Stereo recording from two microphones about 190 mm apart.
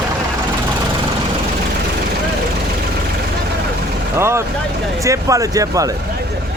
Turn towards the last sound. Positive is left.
turn(degrees=-20)  # may be behind; listen again after turning